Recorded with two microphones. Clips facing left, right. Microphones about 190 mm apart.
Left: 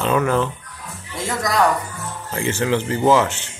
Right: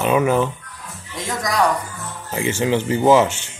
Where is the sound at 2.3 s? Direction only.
20° right (ahead or behind).